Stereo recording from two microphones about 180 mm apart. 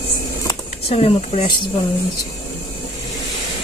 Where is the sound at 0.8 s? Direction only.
35° left (ahead or behind).